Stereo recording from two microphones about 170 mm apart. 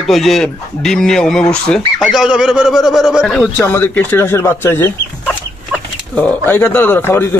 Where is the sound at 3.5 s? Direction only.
15° left (ahead or behind).